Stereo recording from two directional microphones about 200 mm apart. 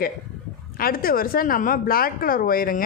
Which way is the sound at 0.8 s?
45° left (ahead or behind).